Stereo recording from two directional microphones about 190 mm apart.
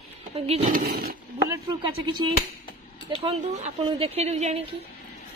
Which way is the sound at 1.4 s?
25° right (ahead or behind).